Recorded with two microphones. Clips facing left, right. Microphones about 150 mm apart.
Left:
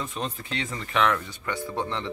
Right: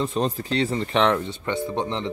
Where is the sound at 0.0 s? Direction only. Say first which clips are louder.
Right 8 dB; 35° right (ahead or behind).